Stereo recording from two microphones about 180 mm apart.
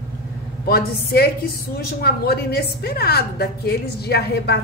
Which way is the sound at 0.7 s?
60° left (ahead or behind).